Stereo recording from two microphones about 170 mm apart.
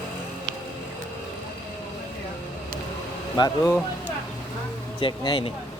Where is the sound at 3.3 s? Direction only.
20° left (ahead or behind).